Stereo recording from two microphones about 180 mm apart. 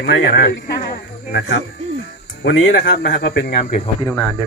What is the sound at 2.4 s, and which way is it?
Speech, 85° left.